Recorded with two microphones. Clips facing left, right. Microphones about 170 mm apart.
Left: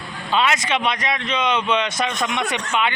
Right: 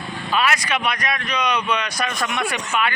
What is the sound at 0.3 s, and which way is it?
A man's voice, 25° left (ahead or behind).